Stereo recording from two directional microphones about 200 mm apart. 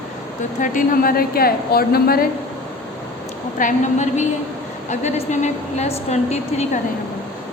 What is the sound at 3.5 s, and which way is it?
A woman's voice, 40° left (ahead or behind).